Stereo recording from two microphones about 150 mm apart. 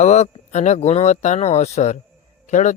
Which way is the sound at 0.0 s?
50° left (ahead or behind).